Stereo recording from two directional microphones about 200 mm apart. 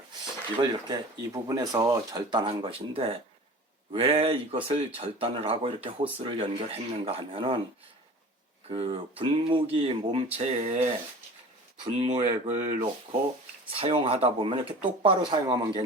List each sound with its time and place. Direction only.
0.6 s speech: 20° right (ahead or behind)
8.6 s speech: 30° right (ahead or behind)